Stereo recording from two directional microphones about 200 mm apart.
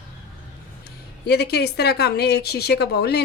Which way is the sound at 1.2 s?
55° left (ahead or behind).